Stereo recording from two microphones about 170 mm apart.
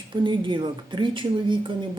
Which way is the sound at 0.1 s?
30° right (ahead or behind).